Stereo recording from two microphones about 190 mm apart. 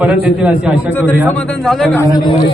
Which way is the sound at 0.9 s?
10° left (ahead or behind).